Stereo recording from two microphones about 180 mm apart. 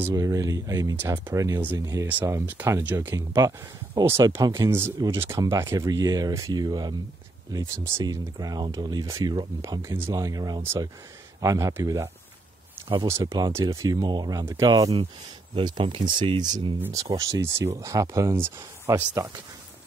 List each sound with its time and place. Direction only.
0.0 s speech: 20° right (ahead or behind)